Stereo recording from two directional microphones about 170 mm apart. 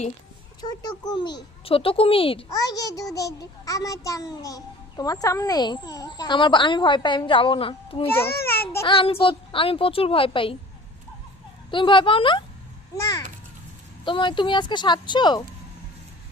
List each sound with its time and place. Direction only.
0.6 s speech: 25° left (ahead or behind)
8.0 s a child's voice: 15° left (ahead or behind)
8.8 s a woman's voice: 30° left (ahead or behind)
11.7 s speech: 30° left (ahead or behind)